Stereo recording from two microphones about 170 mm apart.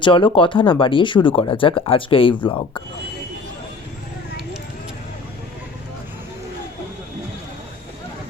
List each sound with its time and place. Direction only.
0.0 s speech: 30° left (ahead or behind)